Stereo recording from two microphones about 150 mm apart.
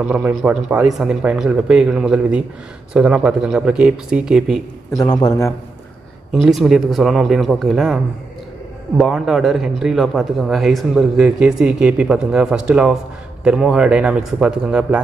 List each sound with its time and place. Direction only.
0.0 s speech: 5° right (ahead or behind)
4.9 s a man's voice: 25° left (ahead or behind)
6.5 s speech: centre (ahead or behind)